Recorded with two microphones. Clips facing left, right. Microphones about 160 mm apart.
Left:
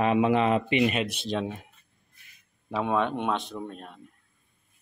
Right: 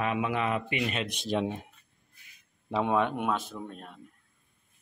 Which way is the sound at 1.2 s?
15° right (ahead or behind).